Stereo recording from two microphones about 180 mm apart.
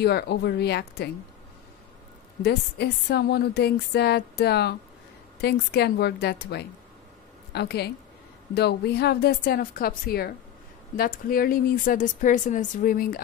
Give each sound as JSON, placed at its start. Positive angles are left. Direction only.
{"t": 0.0, "sound": "speech", "side_deg": 65}
{"t": 2.4, "sound": "a woman's voice", "side_deg": 65}